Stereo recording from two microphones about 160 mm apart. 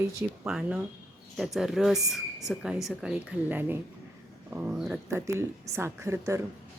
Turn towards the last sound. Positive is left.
turn(degrees=-15)  # may be behind; listen again after turning